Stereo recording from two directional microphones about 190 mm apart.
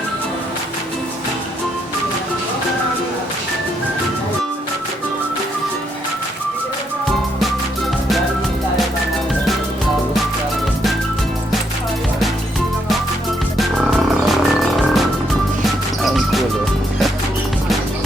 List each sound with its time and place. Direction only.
13.6 s music: centre (ahead or behind)
16.0 s music: centre (ahead or behind)